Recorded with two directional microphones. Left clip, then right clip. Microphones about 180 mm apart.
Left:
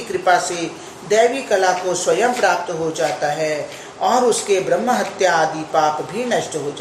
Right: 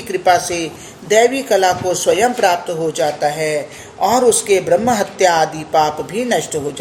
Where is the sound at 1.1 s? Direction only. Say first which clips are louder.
Right 3 dB; 55° right (ahead or behind).